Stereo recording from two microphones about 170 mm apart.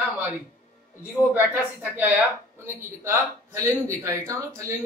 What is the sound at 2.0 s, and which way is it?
Speech, 10° right (ahead or behind).